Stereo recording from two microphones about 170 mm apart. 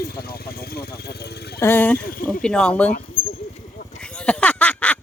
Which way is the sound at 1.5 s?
15° left (ahead or behind).